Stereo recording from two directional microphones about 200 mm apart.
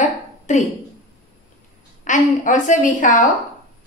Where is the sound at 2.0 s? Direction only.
40° left (ahead or behind).